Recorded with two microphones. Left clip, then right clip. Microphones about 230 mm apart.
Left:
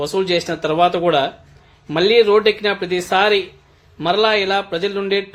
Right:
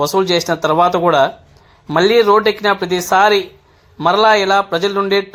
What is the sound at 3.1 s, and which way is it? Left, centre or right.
Speech, centre.